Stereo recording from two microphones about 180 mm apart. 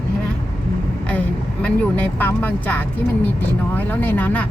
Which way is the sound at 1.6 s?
10° left (ahead or behind).